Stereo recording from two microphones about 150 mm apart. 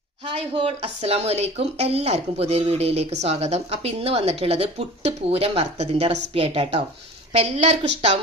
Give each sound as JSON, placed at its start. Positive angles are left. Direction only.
{"t": 0.5, "sound": "speech", "side_deg": -40}